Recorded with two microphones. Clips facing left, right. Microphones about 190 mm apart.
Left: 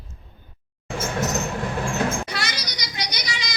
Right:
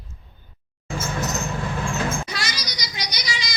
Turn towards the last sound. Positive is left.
turn(degrees=60)  # may be behind; listen again after turning